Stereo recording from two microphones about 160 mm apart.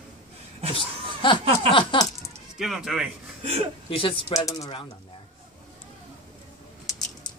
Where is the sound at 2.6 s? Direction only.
Centre (ahead or behind).